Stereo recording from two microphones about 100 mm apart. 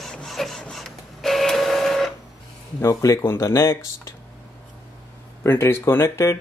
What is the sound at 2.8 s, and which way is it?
Speech, 30° left (ahead or behind).